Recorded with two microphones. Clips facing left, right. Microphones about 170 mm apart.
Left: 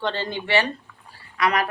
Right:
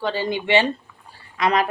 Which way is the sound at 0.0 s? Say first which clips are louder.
Right 3 dB; 10° right (ahead or behind).